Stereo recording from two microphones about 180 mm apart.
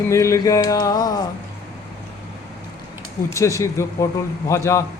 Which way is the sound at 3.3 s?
15° left (ahead or behind).